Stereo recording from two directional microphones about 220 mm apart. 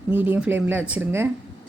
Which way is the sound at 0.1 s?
10° right (ahead or behind).